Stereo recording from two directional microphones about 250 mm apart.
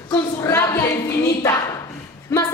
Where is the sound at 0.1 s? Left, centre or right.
Centre.